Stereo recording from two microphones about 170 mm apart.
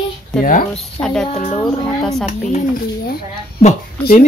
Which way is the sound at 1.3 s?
40° left (ahead or behind).